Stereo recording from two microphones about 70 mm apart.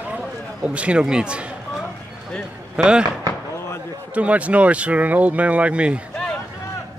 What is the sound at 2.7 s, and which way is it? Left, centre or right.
Speech, centre.